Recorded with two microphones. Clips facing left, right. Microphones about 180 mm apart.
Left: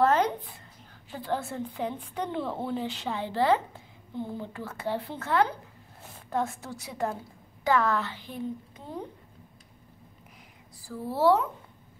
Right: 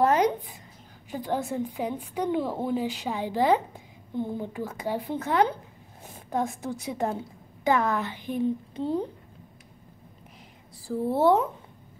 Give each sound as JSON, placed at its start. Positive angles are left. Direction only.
{"t": 0.0, "sound": "a sound", "side_deg": -15}
{"t": 1.1, "sound": "a woman's voice", "side_deg": -15}
{"t": 8.7, "sound": "a child's voice", "side_deg": -30}
{"t": 10.8, "sound": "a woman's voice", "side_deg": -25}